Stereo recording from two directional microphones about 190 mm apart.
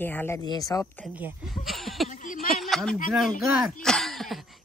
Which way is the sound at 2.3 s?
Centre (ahead or behind).